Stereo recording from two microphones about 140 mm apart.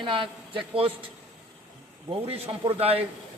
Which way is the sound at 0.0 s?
35° right (ahead or behind).